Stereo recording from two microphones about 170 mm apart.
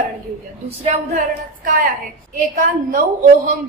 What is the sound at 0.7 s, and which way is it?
A woman's voice, 45° right (ahead or behind).